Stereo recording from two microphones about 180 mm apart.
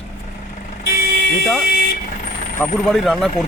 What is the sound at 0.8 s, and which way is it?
Vehicle, 55° left (ahead or behind).